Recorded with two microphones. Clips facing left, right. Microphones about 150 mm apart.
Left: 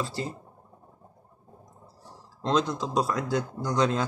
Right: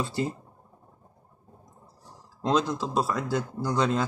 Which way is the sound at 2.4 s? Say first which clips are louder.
Right 1 dB; 5° right (ahead or behind).